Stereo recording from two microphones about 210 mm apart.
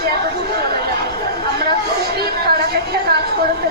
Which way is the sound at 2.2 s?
50° right (ahead or behind).